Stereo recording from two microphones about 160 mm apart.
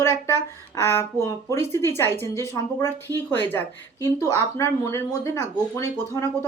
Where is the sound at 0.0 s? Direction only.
15° left (ahead or behind).